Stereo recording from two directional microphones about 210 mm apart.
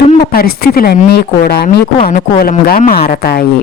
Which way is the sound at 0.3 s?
45° left (ahead or behind).